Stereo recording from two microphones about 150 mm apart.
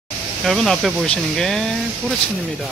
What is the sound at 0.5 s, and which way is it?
Speech, centre (ahead or behind).